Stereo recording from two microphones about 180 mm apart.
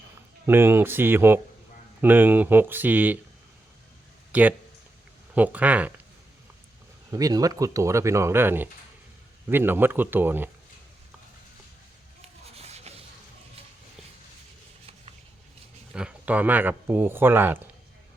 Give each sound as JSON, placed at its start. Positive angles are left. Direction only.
{"t": 0.4, "sound": "speech", "side_deg": -10}
{"t": 4.3, "sound": "speech", "side_deg": -10}
{"t": 7.1, "sound": "speech", "side_deg": -20}
{"t": 12.5, "sound": "a sound", "side_deg": -35}
{"t": 15.9, "sound": "speech", "side_deg": -5}